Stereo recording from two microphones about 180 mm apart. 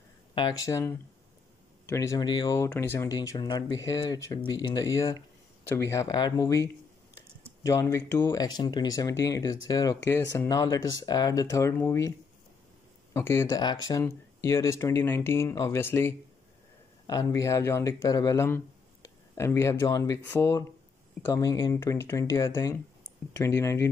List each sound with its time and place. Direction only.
0.3 s speech: 25° left (ahead or behind)
7.6 s speech: 15° left (ahead or behind)
13.1 s speech: 15° left (ahead or behind)